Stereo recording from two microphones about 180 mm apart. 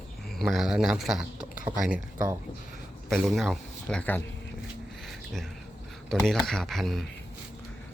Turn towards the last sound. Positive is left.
turn(degrees=0)  # may be behind; listen again after turning